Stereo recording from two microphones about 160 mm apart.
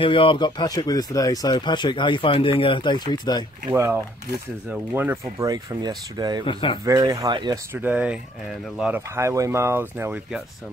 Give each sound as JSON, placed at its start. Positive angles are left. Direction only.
{"t": 0.0, "sound": "speech", "side_deg": 35}
{"t": 3.7, "sound": "speech", "side_deg": -15}
{"t": 6.4, "sound": "speech", "side_deg": 30}
{"t": 6.8, "sound": "speech", "side_deg": -20}
{"t": 7.7, "sound": "speech", "side_deg": -10}